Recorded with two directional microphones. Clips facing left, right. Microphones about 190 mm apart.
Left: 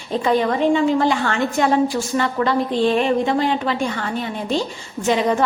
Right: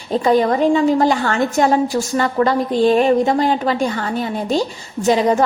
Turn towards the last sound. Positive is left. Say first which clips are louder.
# right 3 dB
turn(degrees=-40)  # may be behind; listen again after turning